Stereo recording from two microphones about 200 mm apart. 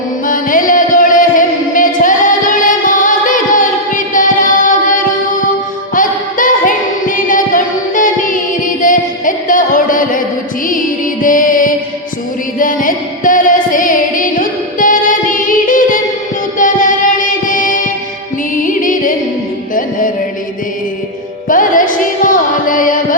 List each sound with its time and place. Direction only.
0.3 s music: 40° left (ahead or behind)
5.9 s music: 40° left (ahead or behind)
21.4 s music: 40° left (ahead or behind)